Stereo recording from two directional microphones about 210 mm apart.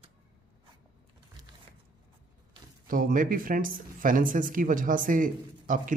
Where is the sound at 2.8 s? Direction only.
40° right (ahead or behind).